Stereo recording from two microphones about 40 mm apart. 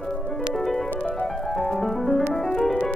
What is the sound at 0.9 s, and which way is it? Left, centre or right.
Music, left.